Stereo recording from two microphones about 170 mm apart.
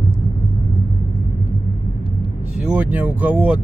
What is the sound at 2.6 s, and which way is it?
Speech, 5° right (ahead or behind).